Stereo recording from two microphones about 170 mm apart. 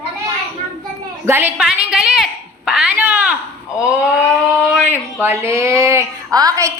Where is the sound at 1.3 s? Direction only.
10° right (ahead or behind).